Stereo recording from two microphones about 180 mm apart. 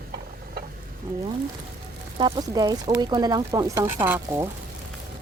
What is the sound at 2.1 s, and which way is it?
Speech, 25° right (ahead or behind).